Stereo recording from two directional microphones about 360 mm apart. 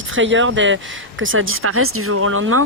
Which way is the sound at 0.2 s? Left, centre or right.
Right.